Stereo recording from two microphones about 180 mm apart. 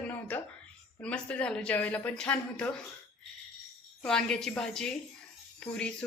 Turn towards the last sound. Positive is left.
turn(degrees=5)  # may be behind; listen again after turning